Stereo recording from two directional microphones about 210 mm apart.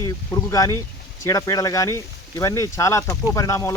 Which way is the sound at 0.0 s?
15° left (ahead or behind).